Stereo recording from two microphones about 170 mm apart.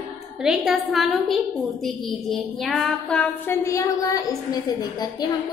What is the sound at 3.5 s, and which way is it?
A woman's voice, 15° left (ahead or behind).